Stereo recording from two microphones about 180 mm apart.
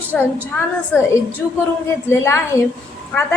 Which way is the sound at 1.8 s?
15° left (ahead or behind).